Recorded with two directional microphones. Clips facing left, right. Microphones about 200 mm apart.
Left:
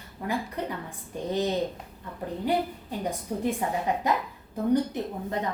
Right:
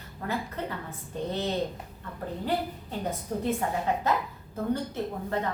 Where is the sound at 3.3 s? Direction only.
15° left (ahead or behind).